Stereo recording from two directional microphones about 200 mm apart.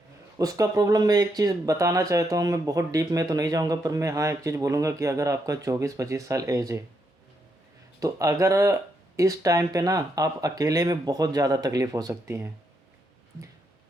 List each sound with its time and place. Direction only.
0.3 s speech: 15° right (ahead or behind)
7.9 s speech: 15° right (ahead or behind)